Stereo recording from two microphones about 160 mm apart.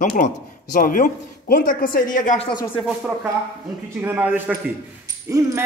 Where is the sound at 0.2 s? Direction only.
55° left (ahead or behind).